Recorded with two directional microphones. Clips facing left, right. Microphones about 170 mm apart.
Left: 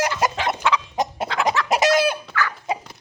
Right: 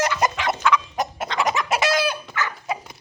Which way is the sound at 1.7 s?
45° left (ahead or behind).